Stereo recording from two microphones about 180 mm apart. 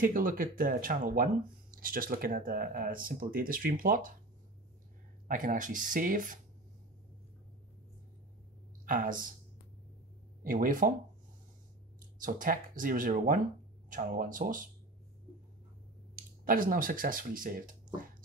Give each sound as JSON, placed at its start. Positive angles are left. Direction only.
{"t": 0.0, "sound": "speech", "side_deg": -50}
{"t": 5.3, "sound": "speech", "side_deg": -50}
{"t": 8.8, "sound": "speech", "side_deg": -50}
{"t": 10.4, "sound": "speech", "side_deg": -50}
{"t": 12.2, "sound": "speech", "side_deg": -50}
{"t": 16.2, "sound": "speech", "side_deg": -50}